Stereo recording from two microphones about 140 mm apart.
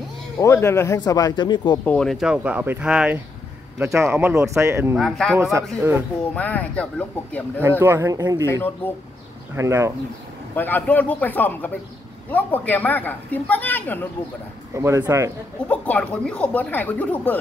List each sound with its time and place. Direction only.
0.4 s speech: 20° left (ahead or behind)
1.9 s speech: 5° left (ahead or behind)
3.9 s a man's voice: 15° right (ahead or behind)
4.9 s speech: centre (ahead or behind)
5.3 s a man's voice: 20° right (ahead or behind)
6.3 s a woman's voice: 10° left (ahead or behind)
7.8 s a man's voice: 20° right (ahead or behind)
8.5 s a woman's voice: 15° left (ahead or behind)
9.6 s a man's voice: 20° right (ahead or behind)
10.5 s a woman's voice: 15° left (ahead or behind)
14.8 s a man's voice: 25° right (ahead or behind)
15.7 s a woman's voice: 10° left (ahead or behind)